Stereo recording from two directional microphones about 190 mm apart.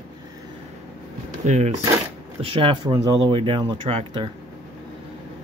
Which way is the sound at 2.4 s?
25° right (ahead or behind).